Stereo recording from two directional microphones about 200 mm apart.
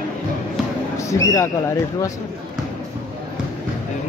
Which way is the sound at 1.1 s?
15° left (ahead or behind).